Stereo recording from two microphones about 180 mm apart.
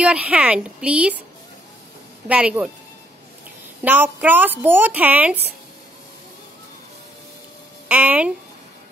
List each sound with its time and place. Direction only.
0.0 s a woman's voice: 5° right (ahead or behind)
2.2 s a woman's voice: 5° right (ahead or behind)
3.8 s a woman's voice: 10° right (ahead or behind)
7.9 s a woman's voice: 10° right (ahead or behind)